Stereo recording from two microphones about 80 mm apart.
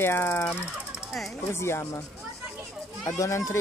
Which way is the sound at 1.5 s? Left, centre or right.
Left.